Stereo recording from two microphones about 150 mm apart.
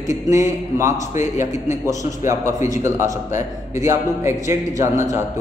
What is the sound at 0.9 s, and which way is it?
Speech, 50° left (ahead or behind).